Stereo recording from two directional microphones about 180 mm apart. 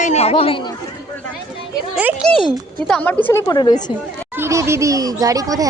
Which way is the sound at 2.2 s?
Centre (ahead or behind).